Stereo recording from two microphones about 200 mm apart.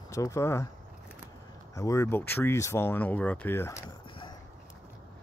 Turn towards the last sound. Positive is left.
turn(degrees=15)  # may be behind; listen again after turning